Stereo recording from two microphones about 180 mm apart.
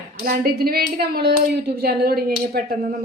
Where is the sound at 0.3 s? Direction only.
60° right (ahead or behind).